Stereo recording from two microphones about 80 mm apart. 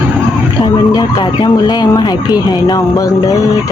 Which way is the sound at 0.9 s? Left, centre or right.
Left.